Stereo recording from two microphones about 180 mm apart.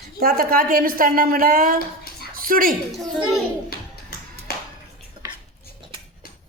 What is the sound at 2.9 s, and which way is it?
Speech, centre (ahead or behind).